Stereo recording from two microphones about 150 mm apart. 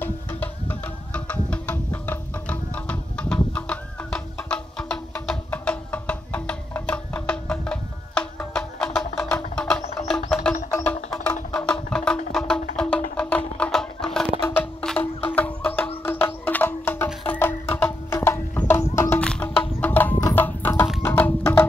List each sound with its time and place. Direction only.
0.0 s music: 10° left (ahead or behind)
11.5 s music: 5° left (ahead or behind)
20.3 s a sound: 10° left (ahead or behind)
21.0 s music: 10° left (ahead or behind)